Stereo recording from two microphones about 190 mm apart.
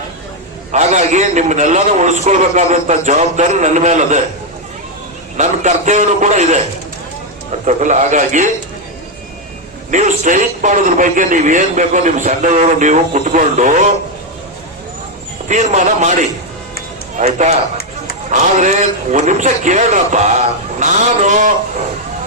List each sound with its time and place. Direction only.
0.7 s a man's voice: 35° right (ahead or behind)
5.4 s a man's voice: 40° right (ahead or behind)
7.6 s a man's voice: 40° right (ahead or behind)
9.9 s a man's voice: 40° right (ahead or behind)
15.4 s a man's voice: 40° right (ahead or behind)